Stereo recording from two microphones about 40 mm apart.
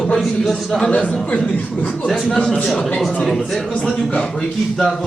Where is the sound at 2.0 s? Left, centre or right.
Centre.